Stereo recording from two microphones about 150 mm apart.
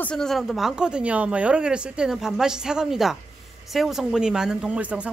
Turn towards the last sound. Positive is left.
turn(degrees=-10)  # may be behind; listen again after turning